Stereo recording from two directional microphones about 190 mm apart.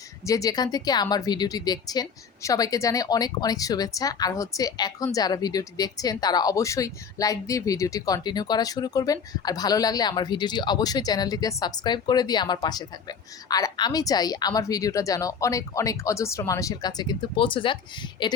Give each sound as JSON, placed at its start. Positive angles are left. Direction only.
{"t": 0.3, "sound": "speech", "side_deg": 20}